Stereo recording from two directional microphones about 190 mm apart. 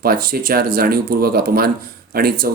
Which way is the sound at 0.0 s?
50° right (ahead or behind).